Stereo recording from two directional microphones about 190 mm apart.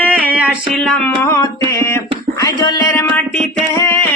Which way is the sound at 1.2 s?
15° left (ahead or behind).